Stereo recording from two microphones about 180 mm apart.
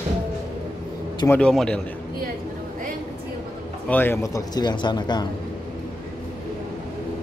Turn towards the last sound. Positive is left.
turn(degrees=25)  # may be behind; listen again after turning